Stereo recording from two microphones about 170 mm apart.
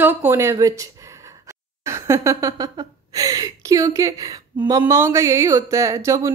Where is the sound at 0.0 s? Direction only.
10° right (ahead or behind).